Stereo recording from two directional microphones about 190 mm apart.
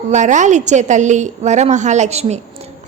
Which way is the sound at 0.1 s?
40° right (ahead or behind).